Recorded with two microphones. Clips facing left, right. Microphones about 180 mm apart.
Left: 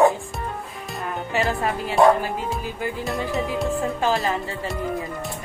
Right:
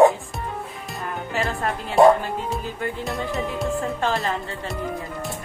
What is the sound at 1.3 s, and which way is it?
Speech, centre (ahead or behind).